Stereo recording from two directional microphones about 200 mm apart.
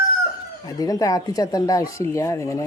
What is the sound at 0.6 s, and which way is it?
Speech, 15° left (ahead or behind).